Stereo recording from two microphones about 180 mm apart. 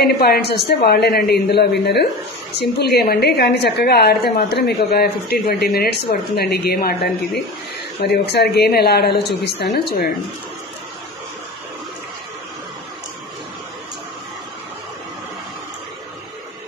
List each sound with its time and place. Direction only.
0.0 s a woman's voice: 60° left (ahead or behind)